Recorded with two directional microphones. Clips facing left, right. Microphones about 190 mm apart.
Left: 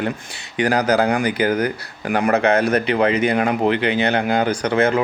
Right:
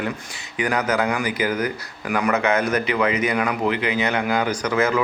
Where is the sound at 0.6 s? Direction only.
35° left (ahead or behind).